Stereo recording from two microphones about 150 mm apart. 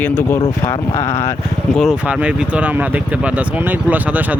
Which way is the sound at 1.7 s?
5° right (ahead or behind).